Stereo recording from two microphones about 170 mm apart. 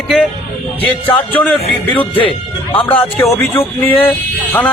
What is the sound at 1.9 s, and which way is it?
Speech, 30° left (ahead or behind).